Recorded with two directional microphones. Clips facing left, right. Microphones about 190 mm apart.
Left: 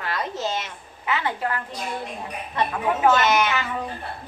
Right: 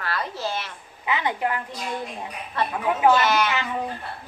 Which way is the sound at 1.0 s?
15° right (ahead or behind).